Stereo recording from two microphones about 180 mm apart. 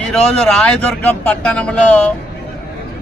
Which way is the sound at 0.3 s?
5° left (ahead or behind).